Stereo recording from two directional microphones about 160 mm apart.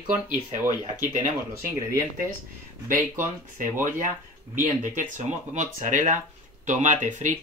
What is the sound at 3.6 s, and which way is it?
Speech, 55° right (ahead or behind).